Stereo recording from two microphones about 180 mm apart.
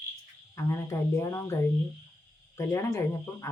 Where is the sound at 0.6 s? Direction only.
15° left (ahead or behind).